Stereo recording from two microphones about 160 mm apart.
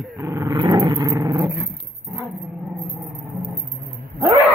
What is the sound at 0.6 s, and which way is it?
Dog, 30° right (ahead or behind).